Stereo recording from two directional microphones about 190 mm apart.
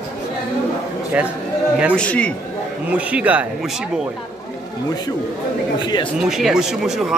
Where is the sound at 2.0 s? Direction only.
5° left (ahead or behind).